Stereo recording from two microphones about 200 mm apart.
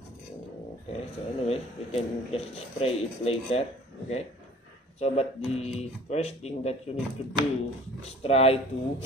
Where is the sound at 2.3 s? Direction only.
30° left (ahead or behind).